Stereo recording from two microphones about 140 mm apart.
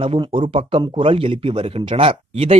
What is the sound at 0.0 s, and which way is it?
Speech, 40° right (ahead or behind).